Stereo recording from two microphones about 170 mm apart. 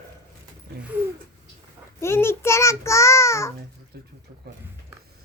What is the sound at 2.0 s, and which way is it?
A child's voice, 15° left (ahead or behind).